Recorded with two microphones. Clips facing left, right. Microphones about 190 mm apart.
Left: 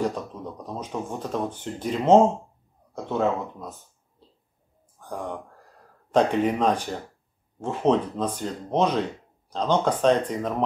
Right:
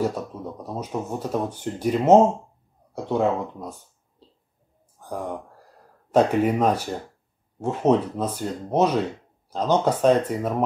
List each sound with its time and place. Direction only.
0.0 s speech: 5° right (ahead or behind)
5.0 s speech: 10° right (ahead or behind)